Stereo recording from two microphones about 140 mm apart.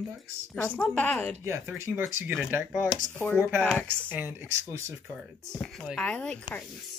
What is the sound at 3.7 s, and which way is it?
Speech, 15° right (ahead or behind).